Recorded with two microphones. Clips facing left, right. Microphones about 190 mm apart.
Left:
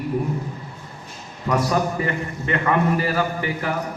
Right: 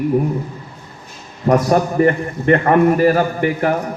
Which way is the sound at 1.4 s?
50° right (ahead or behind).